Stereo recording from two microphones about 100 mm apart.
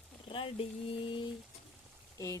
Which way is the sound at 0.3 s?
60° left (ahead or behind).